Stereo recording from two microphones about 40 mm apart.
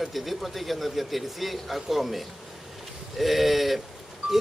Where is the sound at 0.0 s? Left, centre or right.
Centre.